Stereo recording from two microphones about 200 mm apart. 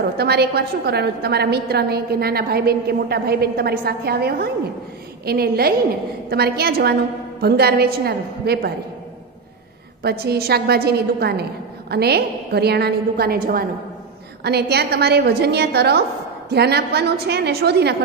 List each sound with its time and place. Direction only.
0.2 s a woman's voice: 55° right (ahead or behind)
10.0 s a woman's voice: 50° right (ahead or behind)